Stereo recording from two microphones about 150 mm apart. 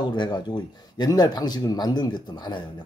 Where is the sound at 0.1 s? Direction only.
30° left (ahead or behind).